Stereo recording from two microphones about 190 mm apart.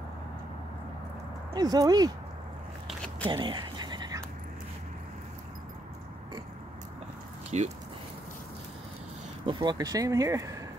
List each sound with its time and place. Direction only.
1.5 s speech: 20° right (ahead or behind)
3.3 s a sound: 25° right (ahead or behind)
7.5 s speech: 35° right (ahead or behind)
9.5 s speech: 20° right (ahead or behind)